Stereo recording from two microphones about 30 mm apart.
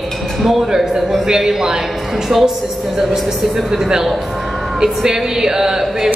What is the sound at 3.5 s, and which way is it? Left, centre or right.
Speech, centre.